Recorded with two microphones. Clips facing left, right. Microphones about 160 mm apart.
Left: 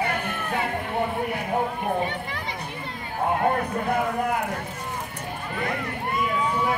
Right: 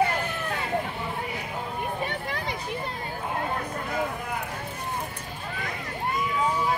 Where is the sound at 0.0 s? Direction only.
60° left (ahead or behind).